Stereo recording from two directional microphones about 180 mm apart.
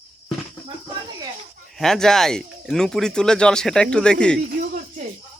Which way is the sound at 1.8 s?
Centre (ahead or behind).